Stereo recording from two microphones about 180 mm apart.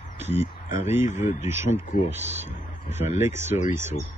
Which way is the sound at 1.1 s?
40° left (ahead or behind).